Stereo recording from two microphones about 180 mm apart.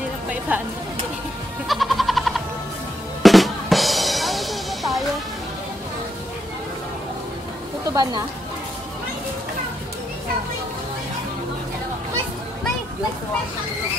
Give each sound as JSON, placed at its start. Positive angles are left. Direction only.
{"t": 0.5, "sound": "speech", "side_deg": -10}
{"t": 1.7, "sound": "music", "side_deg": 0}
{"t": 3.2, "sound": "drum", "side_deg": 0}
{"t": 7.9, "sound": "speech", "side_deg": -20}